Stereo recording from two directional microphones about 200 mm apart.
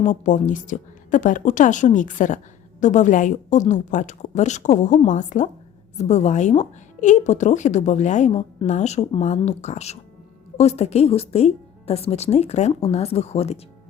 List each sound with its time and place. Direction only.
0.0 s a woman's voice: 40° left (ahead or behind)